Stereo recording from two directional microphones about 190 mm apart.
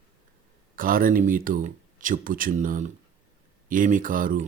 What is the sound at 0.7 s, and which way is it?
Speech, 45° right (ahead or behind).